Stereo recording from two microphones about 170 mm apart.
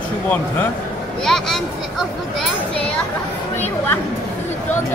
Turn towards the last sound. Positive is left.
turn(degrees=10)  # may be behind; listen again after turning